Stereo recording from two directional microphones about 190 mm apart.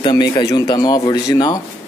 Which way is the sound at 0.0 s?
20° left (ahead or behind).